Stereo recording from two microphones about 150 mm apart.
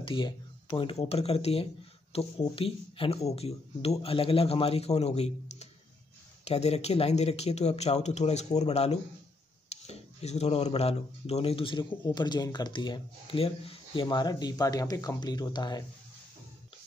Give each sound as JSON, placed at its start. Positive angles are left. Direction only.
{"t": 0.0, "sound": "speech", "side_deg": 35}